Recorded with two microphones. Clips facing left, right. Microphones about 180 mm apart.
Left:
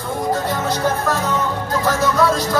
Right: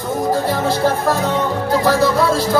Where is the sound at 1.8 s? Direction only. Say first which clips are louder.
Right 1 dB; 35° right (ahead or behind).